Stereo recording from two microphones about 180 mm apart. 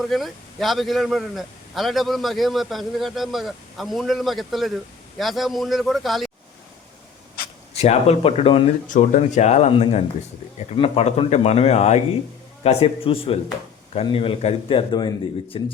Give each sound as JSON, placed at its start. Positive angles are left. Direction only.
{"t": 0.0, "sound": "a man's voice", "side_deg": 0}
{"t": 7.7, "sound": "a man's voice", "side_deg": 35}
{"t": 8.9, "sound": "a man's voice", "side_deg": 45}